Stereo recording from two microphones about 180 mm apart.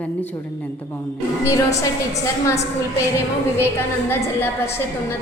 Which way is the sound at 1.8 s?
15° left (ahead or behind).